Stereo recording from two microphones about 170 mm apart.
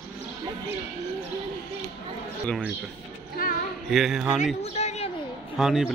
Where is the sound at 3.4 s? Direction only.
60° left (ahead or behind).